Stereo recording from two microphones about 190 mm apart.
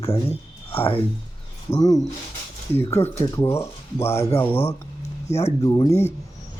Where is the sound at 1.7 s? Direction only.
25° left (ahead or behind).